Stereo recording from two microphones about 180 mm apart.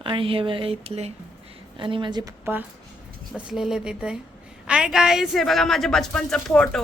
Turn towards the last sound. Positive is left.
turn(degrees=5)  # may be behind; listen again after turning